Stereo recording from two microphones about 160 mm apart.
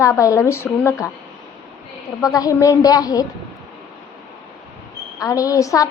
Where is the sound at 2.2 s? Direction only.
20° left (ahead or behind).